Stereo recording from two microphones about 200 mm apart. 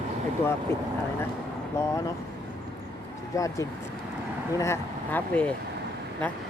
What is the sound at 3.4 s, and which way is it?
Speech, 15° left (ahead or behind).